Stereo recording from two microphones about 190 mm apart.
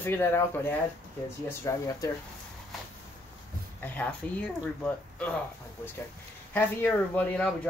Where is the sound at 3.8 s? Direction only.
10° left (ahead or behind).